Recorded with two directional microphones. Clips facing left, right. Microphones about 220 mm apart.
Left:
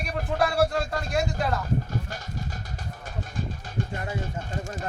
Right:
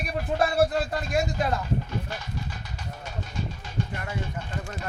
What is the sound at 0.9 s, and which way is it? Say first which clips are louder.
Speech: right 1 dB; 20° right (ahead or behind).